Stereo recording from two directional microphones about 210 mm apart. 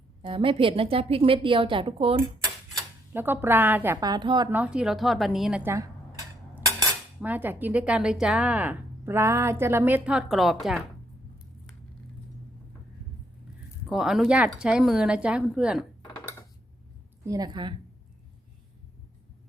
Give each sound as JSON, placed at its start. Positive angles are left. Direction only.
{"t": 0.2, "sound": "a woman's voice", "side_deg": -25}
{"t": 3.1, "sound": "speech", "side_deg": -10}
{"t": 4.4, "sound": "speech", "side_deg": -5}
{"t": 13.9, "sound": "speech", "side_deg": 0}
{"t": 17.2, "sound": "a woman's voice", "side_deg": -15}